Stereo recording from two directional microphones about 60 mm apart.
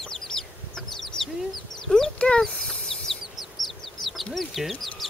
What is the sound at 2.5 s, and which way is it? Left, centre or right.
Bird, centre.